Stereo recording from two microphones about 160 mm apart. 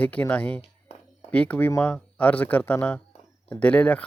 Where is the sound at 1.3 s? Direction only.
10° left (ahead or behind).